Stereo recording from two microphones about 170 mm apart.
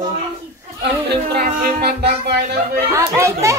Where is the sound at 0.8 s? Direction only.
75° right (ahead or behind).